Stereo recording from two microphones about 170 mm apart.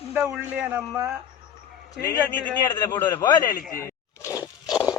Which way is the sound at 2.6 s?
20° left (ahead or behind).